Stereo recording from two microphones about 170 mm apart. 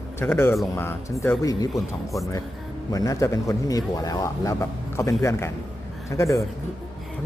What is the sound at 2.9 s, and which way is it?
Speech, 20° left (ahead or behind).